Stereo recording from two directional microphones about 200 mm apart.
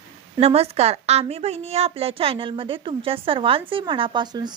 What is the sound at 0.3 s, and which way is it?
Speech, 30° right (ahead or behind).